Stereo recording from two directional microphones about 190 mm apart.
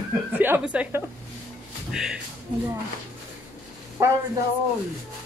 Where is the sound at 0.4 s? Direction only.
10° right (ahead or behind).